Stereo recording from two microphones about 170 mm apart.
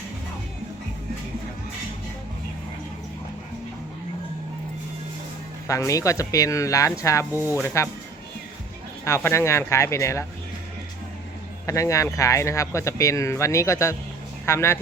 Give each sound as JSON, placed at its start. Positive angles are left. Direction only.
{"t": 5.6, "sound": "speech", "side_deg": 20}
{"t": 7.3, "sound": "speech", "side_deg": -10}
{"t": 7.6, "sound": "speech", "side_deg": 15}
{"t": 9.0, "sound": "speech", "side_deg": 15}
{"t": 11.6, "sound": "speech", "side_deg": 20}